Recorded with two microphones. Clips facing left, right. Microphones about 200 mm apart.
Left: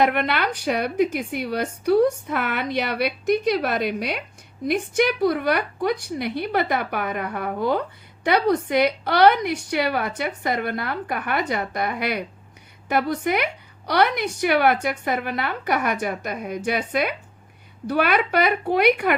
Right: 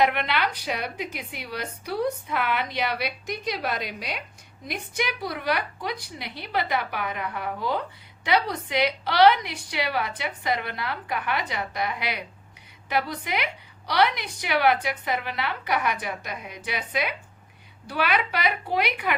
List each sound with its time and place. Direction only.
0.0 s a woman's voice: 50° left (ahead or behind)